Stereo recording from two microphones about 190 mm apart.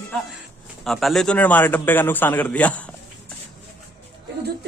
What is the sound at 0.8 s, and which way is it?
A man's voice, centre (ahead or behind).